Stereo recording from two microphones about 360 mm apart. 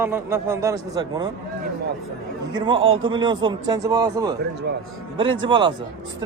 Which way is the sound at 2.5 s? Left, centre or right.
Centre.